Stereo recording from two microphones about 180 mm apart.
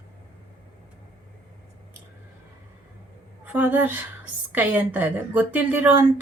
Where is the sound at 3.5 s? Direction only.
10° right (ahead or behind).